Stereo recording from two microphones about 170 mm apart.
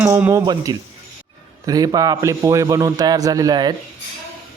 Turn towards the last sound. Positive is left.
turn(degrees=-25)  # may be behind; listen again after turning